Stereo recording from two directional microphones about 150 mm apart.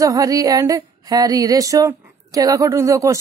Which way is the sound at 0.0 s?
25° right (ahead or behind).